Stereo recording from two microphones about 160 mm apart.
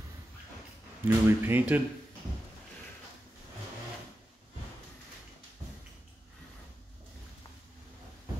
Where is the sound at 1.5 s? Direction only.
10° right (ahead or behind).